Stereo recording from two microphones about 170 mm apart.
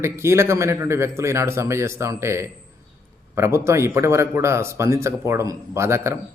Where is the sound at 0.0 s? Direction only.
15° right (ahead or behind).